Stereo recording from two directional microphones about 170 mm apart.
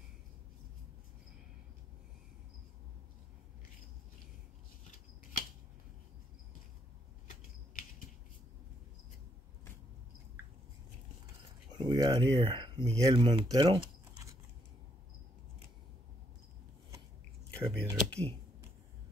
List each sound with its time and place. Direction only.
11.8 s speech: 30° right (ahead or behind)
17.6 s speech: 5° left (ahead or behind)